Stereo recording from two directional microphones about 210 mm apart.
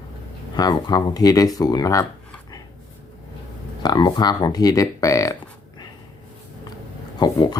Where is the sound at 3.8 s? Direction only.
20° left (ahead or behind).